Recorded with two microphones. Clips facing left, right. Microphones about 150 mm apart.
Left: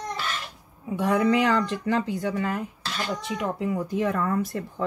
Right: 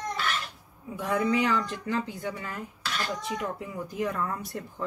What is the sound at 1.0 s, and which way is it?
Speech, 90° left.